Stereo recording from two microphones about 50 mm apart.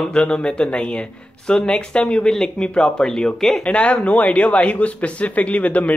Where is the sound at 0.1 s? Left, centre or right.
Centre.